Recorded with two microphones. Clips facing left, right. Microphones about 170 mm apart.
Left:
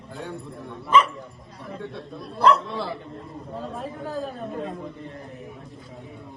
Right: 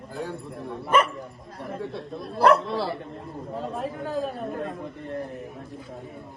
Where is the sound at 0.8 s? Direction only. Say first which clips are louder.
Left 2 dB; 60° right (ahead or behind).